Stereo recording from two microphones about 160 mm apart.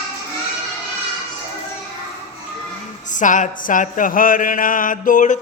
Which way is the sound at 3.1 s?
50° left (ahead or behind).